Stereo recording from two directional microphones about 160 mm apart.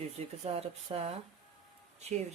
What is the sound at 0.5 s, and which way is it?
Speech, 40° right (ahead or behind).